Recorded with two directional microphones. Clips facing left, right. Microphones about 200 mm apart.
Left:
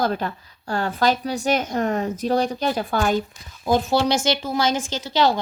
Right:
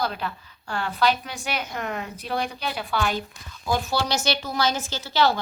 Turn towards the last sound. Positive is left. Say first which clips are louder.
# left 2 dB
turn(degrees=20)  # may be behind; listen again after turning